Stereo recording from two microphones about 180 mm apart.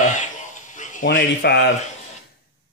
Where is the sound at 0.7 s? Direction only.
45° left (ahead or behind).